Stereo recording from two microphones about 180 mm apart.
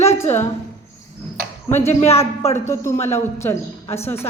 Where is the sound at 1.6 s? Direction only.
15° left (ahead or behind).